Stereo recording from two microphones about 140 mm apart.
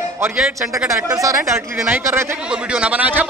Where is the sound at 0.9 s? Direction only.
20° right (ahead or behind).